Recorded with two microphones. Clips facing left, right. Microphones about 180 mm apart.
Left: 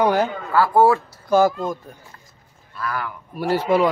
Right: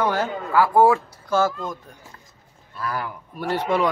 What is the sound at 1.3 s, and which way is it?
Speech, 15° left (ahead or behind).